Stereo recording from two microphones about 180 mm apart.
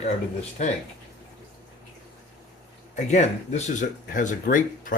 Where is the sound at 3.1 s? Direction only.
40° left (ahead or behind).